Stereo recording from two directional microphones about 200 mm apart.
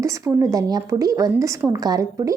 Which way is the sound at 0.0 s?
15° right (ahead or behind).